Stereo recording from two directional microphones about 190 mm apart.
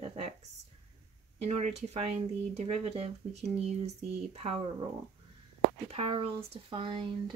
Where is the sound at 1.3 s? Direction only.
35° right (ahead or behind).